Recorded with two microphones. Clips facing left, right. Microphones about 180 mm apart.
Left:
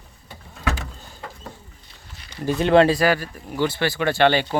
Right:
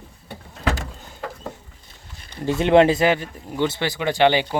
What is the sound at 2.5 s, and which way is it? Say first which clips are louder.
Speech: right 1 dB; 20° right (ahead or behind).